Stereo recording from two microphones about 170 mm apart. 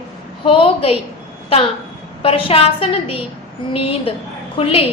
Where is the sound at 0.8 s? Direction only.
35° left (ahead or behind).